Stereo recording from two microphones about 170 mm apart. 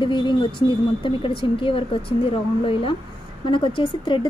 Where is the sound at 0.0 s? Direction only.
25° left (ahead or behind).